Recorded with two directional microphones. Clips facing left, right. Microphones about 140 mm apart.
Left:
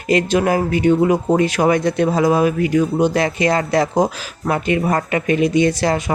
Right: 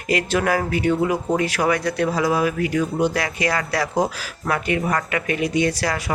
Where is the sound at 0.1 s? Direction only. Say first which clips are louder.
Left 5 dB; 20° left (ahead or behind).